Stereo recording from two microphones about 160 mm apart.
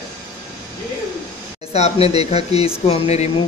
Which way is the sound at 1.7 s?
40° left (ahead or behind).